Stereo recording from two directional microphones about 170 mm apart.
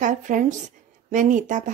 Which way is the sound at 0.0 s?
50° right (ahead or behind).